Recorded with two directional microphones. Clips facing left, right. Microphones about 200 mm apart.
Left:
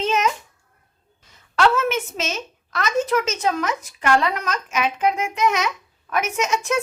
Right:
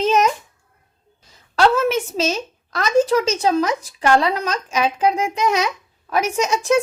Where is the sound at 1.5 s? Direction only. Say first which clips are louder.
Right 3 dB; 35° right (ahead or behind).